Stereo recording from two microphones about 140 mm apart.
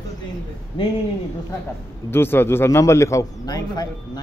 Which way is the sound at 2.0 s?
15° left (ahead or behind).